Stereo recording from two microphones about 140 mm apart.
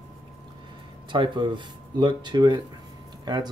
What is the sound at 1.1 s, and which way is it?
Speech, 35° right (ahead or behind).